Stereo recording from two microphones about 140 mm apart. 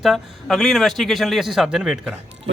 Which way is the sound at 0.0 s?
Centre (ahead or behind).